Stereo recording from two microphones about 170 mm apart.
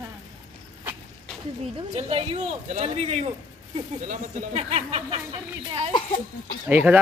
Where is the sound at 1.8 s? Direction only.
35° right (ahead or behind).